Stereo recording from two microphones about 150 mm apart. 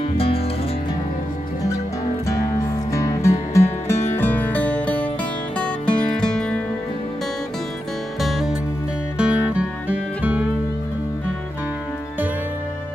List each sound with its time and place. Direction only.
0.0 s music: 40° left (ahead or behind)
2.2 s music: 20° left (ahead or behind); by 6.6 s 5° left (ahead or behind)
8.2 s music: centre (ahead or behind)